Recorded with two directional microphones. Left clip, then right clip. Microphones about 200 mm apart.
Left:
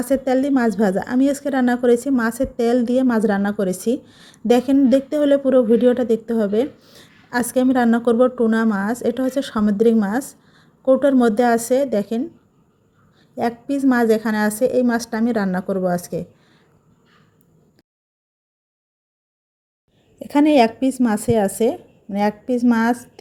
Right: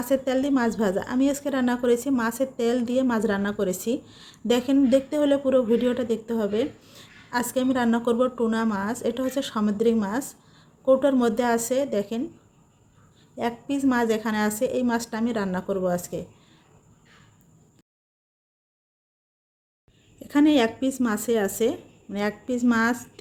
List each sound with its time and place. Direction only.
0.0 s a woman's voice: 30° left (ahead or behind)
20.1 s a woman's voice: 30° left (ahead or behind)